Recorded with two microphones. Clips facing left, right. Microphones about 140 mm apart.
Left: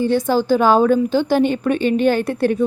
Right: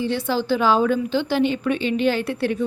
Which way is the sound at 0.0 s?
45° left (ahead or behind).